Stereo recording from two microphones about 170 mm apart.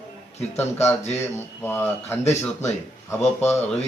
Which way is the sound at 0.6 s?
15° left (ahead or behind).